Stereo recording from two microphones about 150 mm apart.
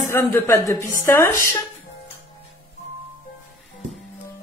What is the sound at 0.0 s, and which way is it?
A woman's voice, 20° left (ahead or behind).